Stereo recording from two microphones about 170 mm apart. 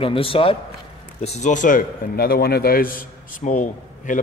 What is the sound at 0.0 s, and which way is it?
A man's voice, 35° left (ahead or behind).